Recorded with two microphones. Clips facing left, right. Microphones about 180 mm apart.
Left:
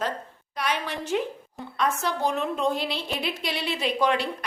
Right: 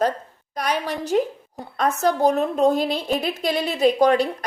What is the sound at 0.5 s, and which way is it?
A woman's voice, 40° right (ahead or behind).